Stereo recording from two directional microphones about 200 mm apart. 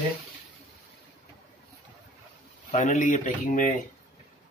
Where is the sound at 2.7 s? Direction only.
40° left (ahead or behind).